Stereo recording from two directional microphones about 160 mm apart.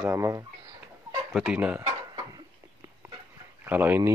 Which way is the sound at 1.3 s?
5° right (ahead or behind).